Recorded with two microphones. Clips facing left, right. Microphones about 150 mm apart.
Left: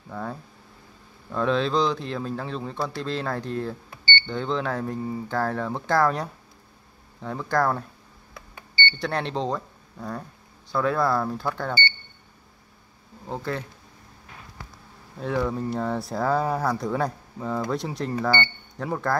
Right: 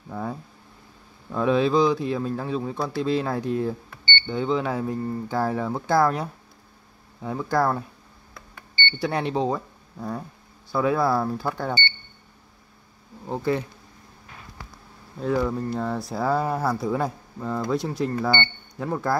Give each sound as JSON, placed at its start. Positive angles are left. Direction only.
{"t": 0.1, "sound": "speech", "side_deg": -10}
{"t": 5.3, "sound": "speech", "side_deg": -10}
{"t": 9.0, "sound": "speech", "side_deg": -10}
{"t": 13.3, "sound": "speech", "side_deg": -10}
{"t": 15.1, "sound": "speech", "side_deg": 0}